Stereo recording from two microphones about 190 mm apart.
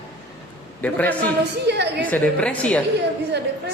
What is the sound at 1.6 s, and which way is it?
Speech, 60° right (ahead or behind).